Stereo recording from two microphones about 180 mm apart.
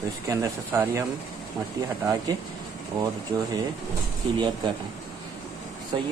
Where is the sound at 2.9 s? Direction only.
20° right (ahead or behind).